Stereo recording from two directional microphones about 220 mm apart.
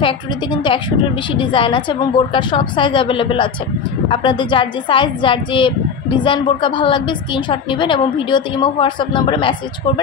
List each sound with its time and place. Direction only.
0.0 s a woman's voice: 20° left (ahead or behind)